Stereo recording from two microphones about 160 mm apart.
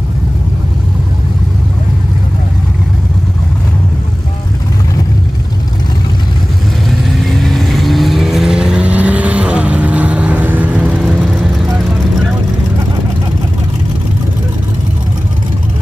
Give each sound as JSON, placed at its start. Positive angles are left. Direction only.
{"t": 7.2, "sound": "vehicle", "side_deg": 0}